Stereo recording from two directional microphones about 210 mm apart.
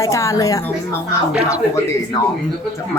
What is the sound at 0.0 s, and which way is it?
Speech, 15° left (ahead or behind).